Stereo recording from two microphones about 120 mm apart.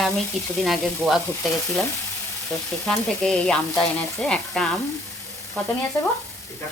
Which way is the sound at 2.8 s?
5° left (ahead or behind).